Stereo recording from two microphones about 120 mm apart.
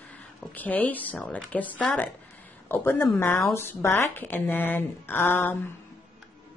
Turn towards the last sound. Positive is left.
turn(degrees=20)  # may be behind; listen again after turning